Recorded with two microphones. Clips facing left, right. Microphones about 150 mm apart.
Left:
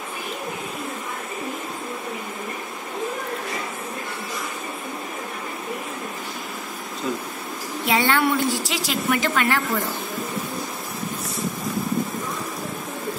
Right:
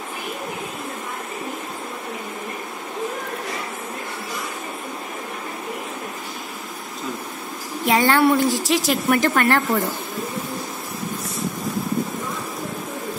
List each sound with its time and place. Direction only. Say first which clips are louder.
7.8 s a woman's voice: right 4 dB; 45° right (ahead or behind)